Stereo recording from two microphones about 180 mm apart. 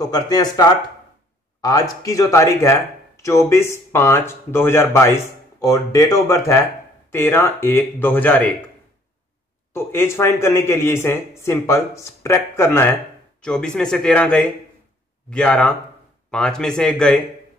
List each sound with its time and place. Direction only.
0.0 s speech: 20° left (ahead or behind)
9.8 s speech: 15° left (ahead or behind)